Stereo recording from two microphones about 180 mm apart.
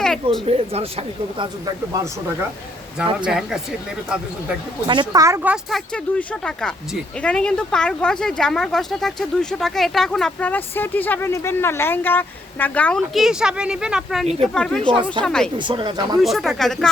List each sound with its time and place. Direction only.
0.4 s speech: 35° right (ahead or behind)
1.9 s speech: 15° right (ahead or behind)
3.2 s speech: centre (ahead or behind)
4.9 s speech: 20° right (ahead or behind)
5.9 s speech: 5° left (ahead or behind)
14.3 s speech: 35° right (ahead or behind)
14.5 s speech: 5° left (ahead or behind)
14.8 s speech: 25° right (ahead or behind)
15.2 s speech: 5° left (ahead or behind)
15.5 s speech: 25° right (ahead or behind)
16.2 s speech: centre (ahead or behind)